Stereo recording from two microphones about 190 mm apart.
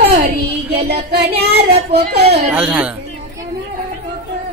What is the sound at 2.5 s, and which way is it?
Child singing, 5° right (ahead or behind).